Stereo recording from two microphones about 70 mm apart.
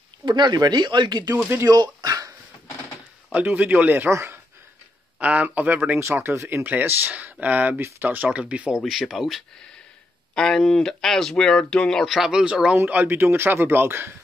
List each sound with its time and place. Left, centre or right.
0.2 s speech: right
1.7 s dog: right
3.3 s speech: right
3.9 s speech: right
5.2 s speech: centre
5.9 s speech: right
6.6 s speech: right
8.3 s speech: centre
8.7 s speech: centre
10.3 s speech: centre
12.8 s speech: right